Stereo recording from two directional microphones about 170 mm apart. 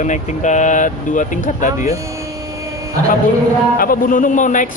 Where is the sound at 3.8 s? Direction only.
55° left (ahead or behind).